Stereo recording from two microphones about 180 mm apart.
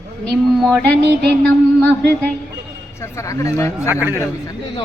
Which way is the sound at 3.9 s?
15° right (ahead or behind).